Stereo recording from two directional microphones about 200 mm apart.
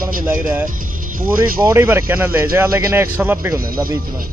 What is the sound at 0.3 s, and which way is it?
Speech, 10° right (ahead or behind).